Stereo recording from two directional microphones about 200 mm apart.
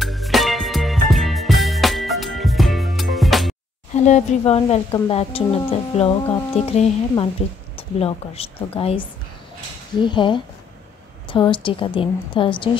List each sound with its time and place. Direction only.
0.0 s music: centre (ahead or behind)
3.9 s speech: 35° left (ahead or behind)